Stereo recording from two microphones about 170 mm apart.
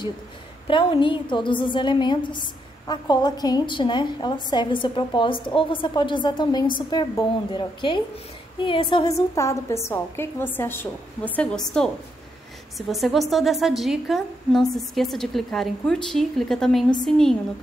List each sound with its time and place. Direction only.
0.7 s a woman's voice: 30° left (ahead or behind); by 17.4 s centre (ahead or behind)